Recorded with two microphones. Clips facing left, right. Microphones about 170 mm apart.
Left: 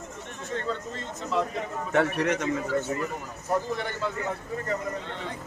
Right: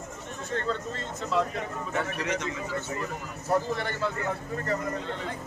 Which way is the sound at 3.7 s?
15° left (ahead or behind).